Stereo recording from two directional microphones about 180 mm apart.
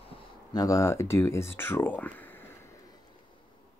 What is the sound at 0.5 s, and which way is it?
Speech, 20° left (ahead or behind).